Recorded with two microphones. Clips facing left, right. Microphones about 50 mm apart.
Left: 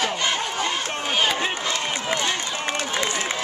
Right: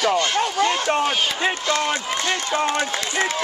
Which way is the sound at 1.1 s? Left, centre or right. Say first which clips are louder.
Left 2 dB; centre.